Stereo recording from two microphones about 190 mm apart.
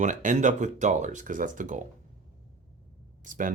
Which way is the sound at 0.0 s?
40° right (ahead or behind).